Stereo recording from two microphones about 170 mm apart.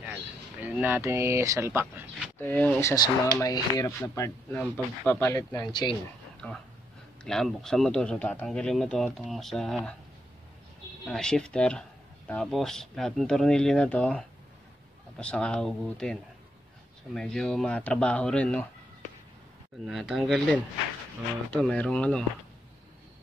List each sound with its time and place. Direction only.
0.0 s speech: 10° right (ahead or behind)
2.3 s speech: 10° left (ahead or behind)
4.5 s speech: 5° left (ahead or behind); by 5.9 s 25° left (ahead or behind)
6.4 s speech: 10° left (ahead or behind)
11.1 s speech: 5° left (ahead or behind)
19.9 s speech: centre (ahead or behind)